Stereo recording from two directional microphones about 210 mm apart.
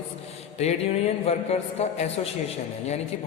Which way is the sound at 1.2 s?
30° left (ahead or behind).